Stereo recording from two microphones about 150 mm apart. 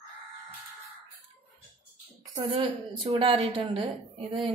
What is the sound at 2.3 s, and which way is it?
A woman's voice, 45° right (ahead or behind).